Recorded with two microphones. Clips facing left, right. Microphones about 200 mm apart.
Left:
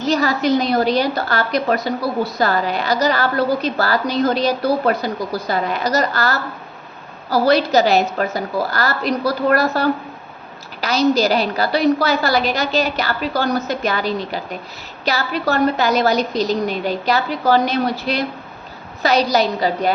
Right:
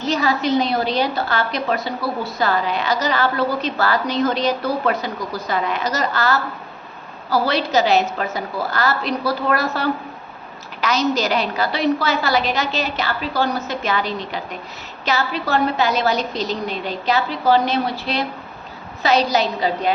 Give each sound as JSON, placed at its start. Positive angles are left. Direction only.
{"t": 0.0, "sound": "a woman's voice", "side_deg": 40}